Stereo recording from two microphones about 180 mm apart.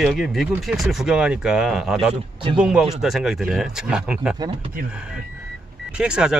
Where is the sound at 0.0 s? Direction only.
Centre (ahead or behind).